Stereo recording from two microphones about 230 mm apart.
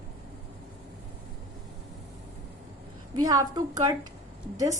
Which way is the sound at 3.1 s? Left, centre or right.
Centre.